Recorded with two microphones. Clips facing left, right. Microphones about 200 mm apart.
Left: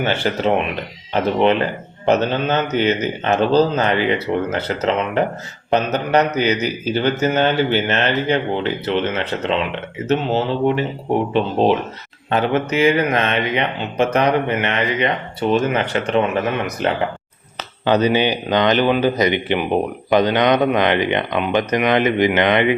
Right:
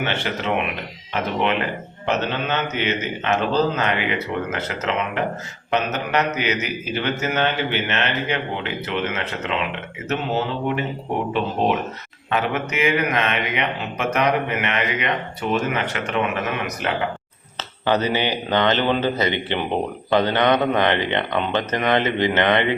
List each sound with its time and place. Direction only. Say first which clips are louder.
0.0 s a man's voice: left 6 dB; 35° left (ahead or behind)
12.3 s a man's voice: left 5 dB; 30° left (ahead or behind)
17.6 s speech: left 4 dB; 15° left (ahead or behind)